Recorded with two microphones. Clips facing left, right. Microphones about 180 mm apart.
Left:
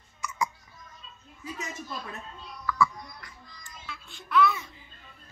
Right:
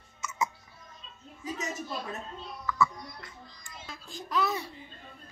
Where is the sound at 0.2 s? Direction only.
20° right (ahead or behind).